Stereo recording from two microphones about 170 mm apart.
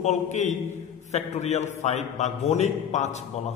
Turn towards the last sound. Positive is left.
turn(degrees=45)  # may be behind; listen again after turning